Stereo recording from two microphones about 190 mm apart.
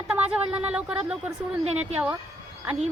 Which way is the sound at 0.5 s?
5° right (ahead or behind).